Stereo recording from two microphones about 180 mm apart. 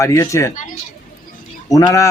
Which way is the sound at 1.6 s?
20° left (ahead or behind).